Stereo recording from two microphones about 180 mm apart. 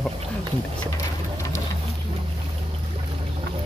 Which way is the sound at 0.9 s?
15° left (ahead or behind).